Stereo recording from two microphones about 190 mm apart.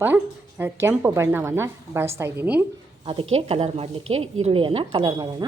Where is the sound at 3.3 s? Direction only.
30° right (ahead or behind).